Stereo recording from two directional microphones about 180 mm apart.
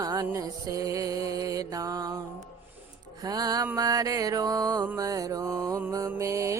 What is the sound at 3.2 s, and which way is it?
Mantra, 20° right (ahead or behind).